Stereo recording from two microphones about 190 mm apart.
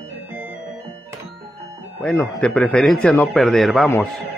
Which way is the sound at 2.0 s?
5° left (ahead or behind).